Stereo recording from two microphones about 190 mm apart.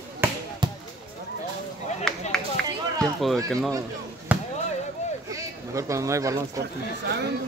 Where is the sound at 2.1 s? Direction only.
5° left (ahead or behind).